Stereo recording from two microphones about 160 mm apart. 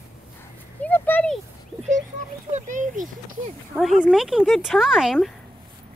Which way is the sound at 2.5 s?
50° right (ahead or behind).